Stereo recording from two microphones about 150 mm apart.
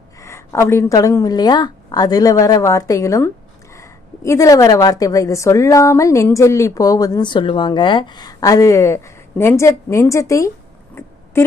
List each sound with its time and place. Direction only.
0.2 s a woman's voice: 20° left (ahead or behind)